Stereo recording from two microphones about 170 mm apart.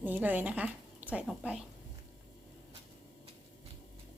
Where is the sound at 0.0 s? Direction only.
10° right (ahead or behind).